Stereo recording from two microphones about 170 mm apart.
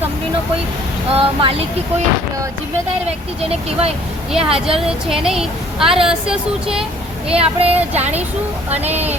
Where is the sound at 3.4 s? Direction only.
35° right (ahead or behind).